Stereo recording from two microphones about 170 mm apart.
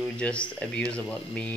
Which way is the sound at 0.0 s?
5° left (ahead or behind).